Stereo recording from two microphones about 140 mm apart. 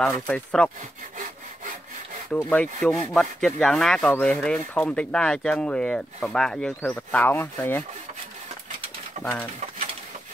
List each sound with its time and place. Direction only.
0.0 s speech: 5° left (ahead or behind)
1.1 s sawing: 70° right (ahead or behind)
2.5 s speech: 10° left (ahead or behind)
9.2 s speech: 10° left (ahead or behind)